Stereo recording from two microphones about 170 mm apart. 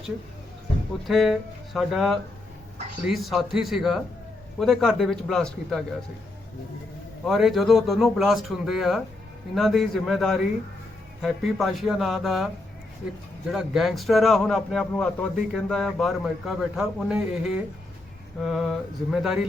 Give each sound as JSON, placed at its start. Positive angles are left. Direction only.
{"t": 1.0, "sound": "a man's voice", "side_deg": 0}
{"t": 7.3, "sound": "a man's voice", "side_deg": 0}
{"t": 13.5, "sound": "a man's voice", "side_deg": 0}